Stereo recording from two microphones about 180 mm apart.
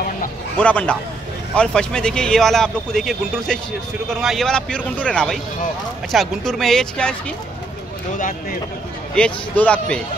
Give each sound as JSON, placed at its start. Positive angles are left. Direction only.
{"t": 0.6, "sound": "speech", "side_deg": 5}
{"t": 8.2, "sound": "speech", "side_deg": 50}
{"t": 9.1, "sound": "speech", "side_deg": 5}